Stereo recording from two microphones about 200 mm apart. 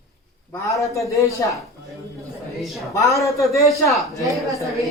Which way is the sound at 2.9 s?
15° left (ahead or behind).